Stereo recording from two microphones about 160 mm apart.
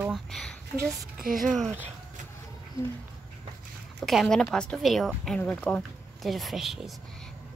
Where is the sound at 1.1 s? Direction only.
60° right (ahead or behind).